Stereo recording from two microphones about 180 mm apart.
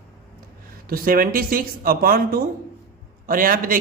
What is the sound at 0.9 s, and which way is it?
A man's voice, 55° right (ahead or behind).